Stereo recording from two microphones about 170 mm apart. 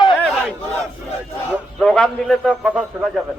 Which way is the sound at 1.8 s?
5° left (ahead or behind).